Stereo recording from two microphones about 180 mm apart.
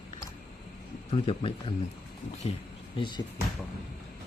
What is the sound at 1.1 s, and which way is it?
Speech, 30° left (ahead or behind).